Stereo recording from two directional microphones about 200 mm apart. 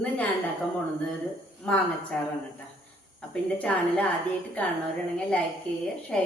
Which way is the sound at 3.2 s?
5° left (ahead or behind).